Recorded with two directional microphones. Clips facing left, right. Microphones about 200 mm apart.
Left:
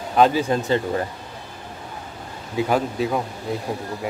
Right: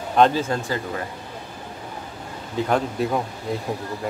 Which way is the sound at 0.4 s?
20° left (ahead or behind).